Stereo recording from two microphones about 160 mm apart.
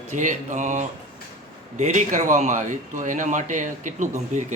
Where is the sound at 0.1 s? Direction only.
50° right (ahead or behind).